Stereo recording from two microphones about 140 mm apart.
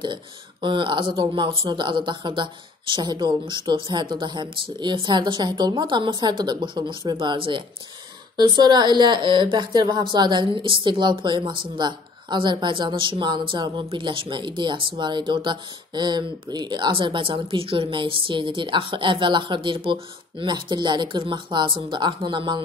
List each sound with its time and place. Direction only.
0.0 s speech: 35° right (ahead or behind)